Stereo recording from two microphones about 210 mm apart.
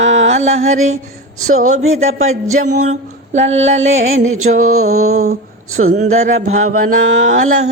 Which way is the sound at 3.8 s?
70° right (ahead or behind).